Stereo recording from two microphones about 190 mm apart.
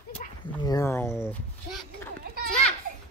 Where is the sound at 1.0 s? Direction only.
5° right (ahead or behind).